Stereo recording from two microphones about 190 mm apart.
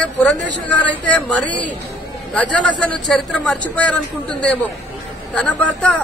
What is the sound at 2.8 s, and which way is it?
Speech, 5° left (ahead or behind).